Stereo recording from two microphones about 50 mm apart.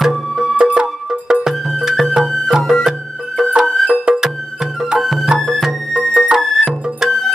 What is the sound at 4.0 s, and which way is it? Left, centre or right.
Music, centre.